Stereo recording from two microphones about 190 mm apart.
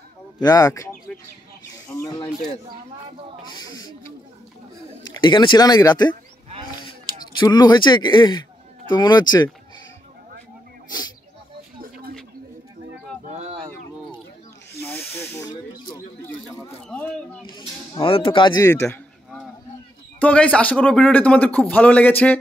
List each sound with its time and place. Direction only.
0.4 s speech: 20° left (ahead or behind)
2.0 s speech: 20° left (ahead or behind)
3.5 s speech: 20° left (ahead or behind)
5.0 s speech: 25° left (ahead or behind)
10.9 s speech: 20° left (ahead or behind)
11.8 s a sound: 45° right (ahead or behind)
13.3 s a sound: 35° right (ahead or behind)
14.8 s snake: 10° left (ahead or behind)
16.3 s a sound: 10° left (ahead or behind)
17.6 s speech: 25° left (ahead or behind)
18.9 s a sound: 5° left (ahead or behind)
20.2 s a man's voice: 5° left (ahead or behind)